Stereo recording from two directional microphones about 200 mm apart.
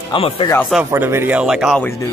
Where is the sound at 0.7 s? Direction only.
10° right (ahead or behind).